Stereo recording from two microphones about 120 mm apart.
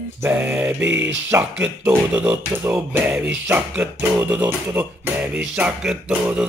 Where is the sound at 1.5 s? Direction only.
10° right (ahead or behind).